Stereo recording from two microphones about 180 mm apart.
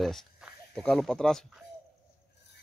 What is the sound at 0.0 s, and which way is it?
Speech, centre (ahead or behind).